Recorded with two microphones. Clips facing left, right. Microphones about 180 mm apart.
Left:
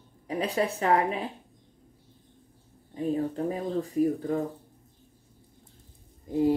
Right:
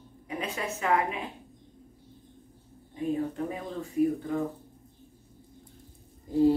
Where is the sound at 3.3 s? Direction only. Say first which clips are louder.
Left 5 dB; 35° left (ahead or behind).